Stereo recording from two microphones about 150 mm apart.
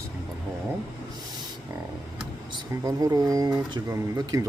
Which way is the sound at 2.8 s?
25° right (ahead or behind).